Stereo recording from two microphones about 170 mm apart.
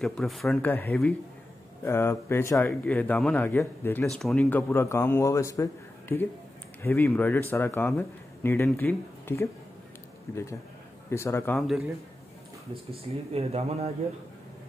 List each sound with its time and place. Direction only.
0.0 s speech: centre (ahead or behind)
4.0 s speech: centre (ahead or behind)
11.5 s speech: centre (ahead or behind)
13.3 s speech: 35° right (ahead or behind)